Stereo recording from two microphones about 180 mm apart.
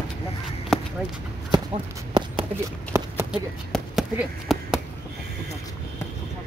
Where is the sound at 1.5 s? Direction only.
25° right (ahead or behind).